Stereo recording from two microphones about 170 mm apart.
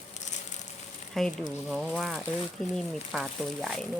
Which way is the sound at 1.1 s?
Centre (ahead or behind).